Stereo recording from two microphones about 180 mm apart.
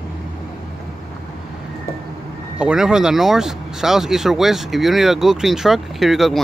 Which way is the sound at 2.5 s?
5° right (ahead or behind).